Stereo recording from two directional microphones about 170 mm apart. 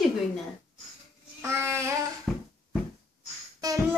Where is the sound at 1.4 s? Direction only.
15° right (ahead or behind).